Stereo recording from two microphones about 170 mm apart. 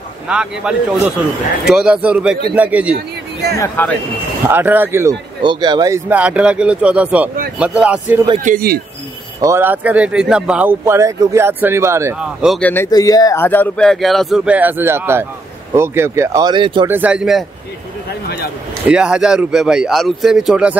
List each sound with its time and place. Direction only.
0.3 s speech: 5° right (ahead or behind)
3.5 s speech: 15° left (ahead or behind)
4.5 s speech: 10° right (ahead or behind)
5.4 s speech: 25° right (ahead or behind)
6.0 s speech: 10° right (ahead or behind)
8.5 s speech: 60° right (ahead or behind)
9.4 s speech: 15° right (ahead or behind)
12.2 s speech: 5° right (ahead or behind)
12.5 s speech: 10° left (ahead or behind)
12.9 s speech: 20° left (ahead or behind); by 16.8 s 30° right (ahead or behind)
16.8 s speech: 10° right (ahead or behind)
18.9 s speech: 5° right (ahead or behind)